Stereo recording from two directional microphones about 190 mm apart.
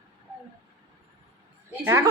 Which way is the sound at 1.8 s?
10° right (ahead or behind).